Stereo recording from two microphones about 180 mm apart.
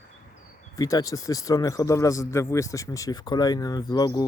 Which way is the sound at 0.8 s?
20° left (ahead or behind).